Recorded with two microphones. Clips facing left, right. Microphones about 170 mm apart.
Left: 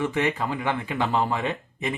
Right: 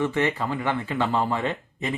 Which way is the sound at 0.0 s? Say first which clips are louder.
Right 1 dB; 15° left (ahead or behind).